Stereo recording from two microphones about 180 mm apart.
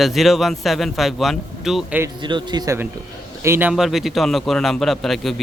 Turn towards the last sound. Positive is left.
turn(degrees=0)  # may be behind; listen again after turning